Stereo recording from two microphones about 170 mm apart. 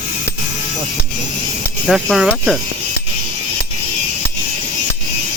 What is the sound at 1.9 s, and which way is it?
Speech, centre (ahead or behind).